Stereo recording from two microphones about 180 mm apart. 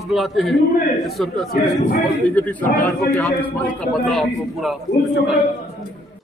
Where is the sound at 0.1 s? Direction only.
Centre (ahead or behind).